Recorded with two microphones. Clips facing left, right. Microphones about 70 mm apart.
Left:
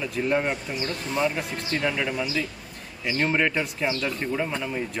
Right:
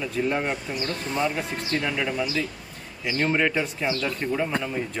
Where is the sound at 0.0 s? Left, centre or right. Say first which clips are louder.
Left 1 dB; centre.